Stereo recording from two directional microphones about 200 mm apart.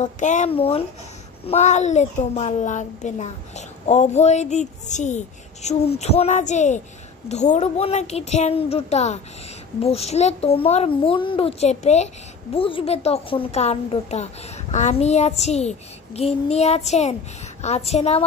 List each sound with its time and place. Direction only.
0.0 s a woman's voice: 35° left (ahead or behind)